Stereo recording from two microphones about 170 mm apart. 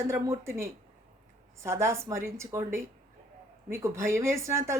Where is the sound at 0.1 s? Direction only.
15° right (ahead or behind).